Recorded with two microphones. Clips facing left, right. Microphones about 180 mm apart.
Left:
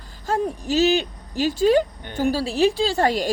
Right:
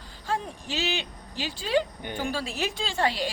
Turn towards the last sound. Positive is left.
turn(degrees=45)  # may be behind; listen again after turning